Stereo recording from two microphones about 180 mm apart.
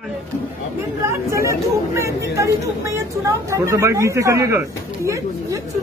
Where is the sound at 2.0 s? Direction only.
15° right (ahead or behind).